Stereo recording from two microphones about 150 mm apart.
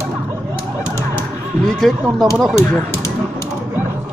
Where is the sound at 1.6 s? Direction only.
Centre (ahead or behind).